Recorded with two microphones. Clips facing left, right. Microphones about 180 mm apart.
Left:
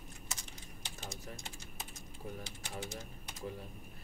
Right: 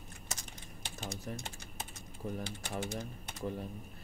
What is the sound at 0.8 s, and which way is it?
Speech, 55° right (ahead or behind).